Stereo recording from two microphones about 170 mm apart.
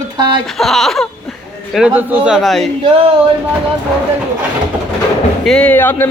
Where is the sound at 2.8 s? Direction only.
30° right (ahead or behind).